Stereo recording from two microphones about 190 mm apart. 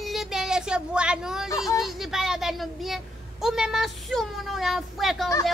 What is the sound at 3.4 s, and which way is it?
A child's voice, 5° right (ahead or behind).